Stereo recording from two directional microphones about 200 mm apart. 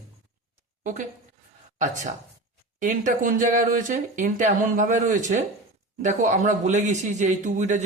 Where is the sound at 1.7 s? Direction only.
40° right (ahead or behind).